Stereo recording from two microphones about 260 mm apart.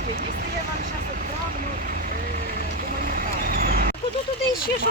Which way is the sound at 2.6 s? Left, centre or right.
Right.